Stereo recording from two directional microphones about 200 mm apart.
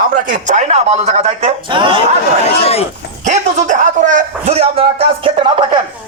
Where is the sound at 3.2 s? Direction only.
40° right (ahead or behind).